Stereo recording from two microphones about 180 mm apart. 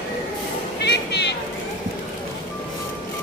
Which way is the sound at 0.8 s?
70° left (ahead or behind).